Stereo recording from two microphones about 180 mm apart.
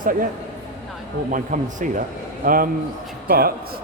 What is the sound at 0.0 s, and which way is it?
Speech, 50° right (ahead or behind).